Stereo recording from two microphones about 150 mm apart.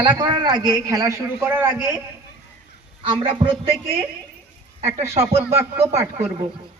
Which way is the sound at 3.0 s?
35° right (ahead or behind).